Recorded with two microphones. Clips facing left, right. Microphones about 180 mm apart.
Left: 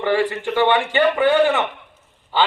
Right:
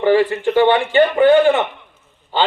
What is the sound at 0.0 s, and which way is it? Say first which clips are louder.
A man's voice: right 5 dB; 45° right (ahead or behind).